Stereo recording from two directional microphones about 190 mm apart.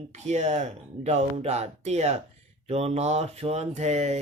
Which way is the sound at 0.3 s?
35° right (ahead or behind).